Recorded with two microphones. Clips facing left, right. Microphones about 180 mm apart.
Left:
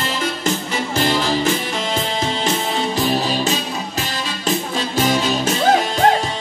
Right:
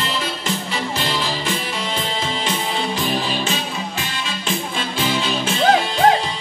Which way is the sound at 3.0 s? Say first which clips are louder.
Left 3 dB; 40° left (ahead or behind).